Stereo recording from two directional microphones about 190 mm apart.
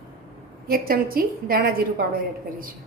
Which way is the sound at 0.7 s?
50° right (ahead or behind).